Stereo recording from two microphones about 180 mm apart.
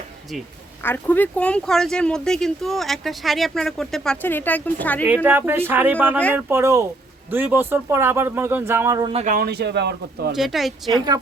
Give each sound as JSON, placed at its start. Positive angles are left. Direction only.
{"t": 0.8, "sound": "speech", "side_deg": 10}
{"t": 5.0, "sound": "speech", "side_deg": -10}
{"t": 9.1, "sound": "speech", "side_deg": -45}
{"t": 10.3, "sound": "speech", "side_deg": 0}
{"t": 10.9, "sound": "a woman's voice", "side_deg": -20}